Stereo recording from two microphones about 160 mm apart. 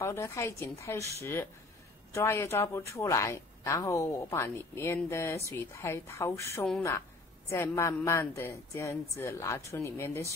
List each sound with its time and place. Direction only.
0.0 s a woman's voice: 15° left (ahead or behind)